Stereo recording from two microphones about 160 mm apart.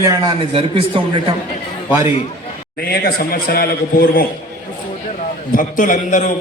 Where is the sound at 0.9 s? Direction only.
30° right (ahead or behind).